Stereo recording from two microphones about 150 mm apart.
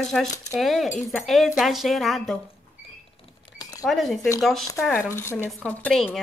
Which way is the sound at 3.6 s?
25° left (ahead or behind).